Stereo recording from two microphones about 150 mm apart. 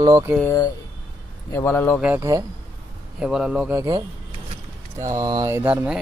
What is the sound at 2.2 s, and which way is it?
Speech, 20° right (ahead or behind).